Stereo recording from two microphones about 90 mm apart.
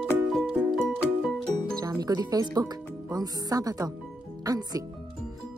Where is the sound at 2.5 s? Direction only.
50° right (ahead or behind).